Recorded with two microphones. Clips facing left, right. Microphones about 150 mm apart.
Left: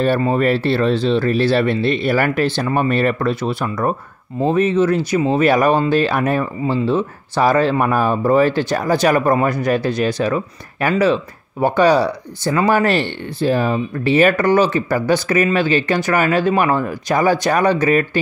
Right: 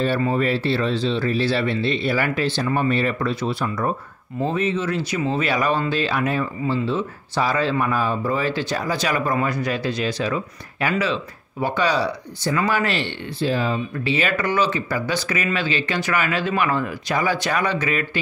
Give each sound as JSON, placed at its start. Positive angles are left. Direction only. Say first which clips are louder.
{"t": 0.3, "sound": "speech", "louder": "left 5 dB", "side_deg": 55}